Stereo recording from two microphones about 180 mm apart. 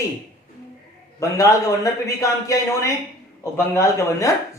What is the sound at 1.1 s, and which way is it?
A man's voice, 20° left (ahead or behind).